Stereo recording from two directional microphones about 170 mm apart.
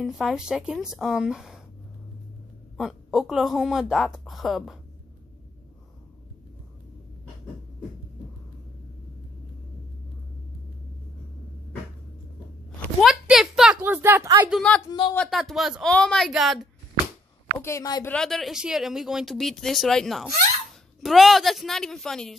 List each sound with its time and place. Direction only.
0.0 s speech: centre (ahead or behind)
2.8 s speech: centre (ahead or behind)
13.0 s a sound: centre (ahead or behind); by 14.5 s 15° right (ahead or behind)
14.5 s speech: 5° left (ahead or behind)
14.9 s speech: 30° left (ahead or behind)
15.1 s speech: centre (ahead or behind)
17.6 s speech: 15° left (ahead or behind)
18.1 s speech: 5° left (ahead or behind)